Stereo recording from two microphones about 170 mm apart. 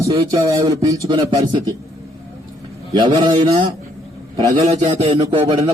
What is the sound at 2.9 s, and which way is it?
Speech, 25° right (ahead or behind).